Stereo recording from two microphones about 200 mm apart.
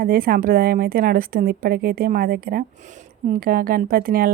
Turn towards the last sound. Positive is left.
turn(degrees=-45)  # may be behind; listen again after turning